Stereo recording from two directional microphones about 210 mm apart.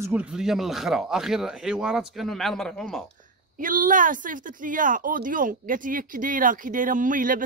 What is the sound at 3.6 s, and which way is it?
Speech, 40° right (ahead or behind).